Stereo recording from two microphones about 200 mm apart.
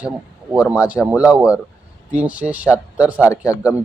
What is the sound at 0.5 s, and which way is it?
Speech, 5° right (ahead or behind).